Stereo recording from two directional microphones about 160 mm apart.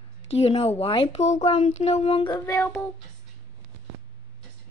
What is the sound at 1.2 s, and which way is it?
Child singing, 45° left (ahead or behind).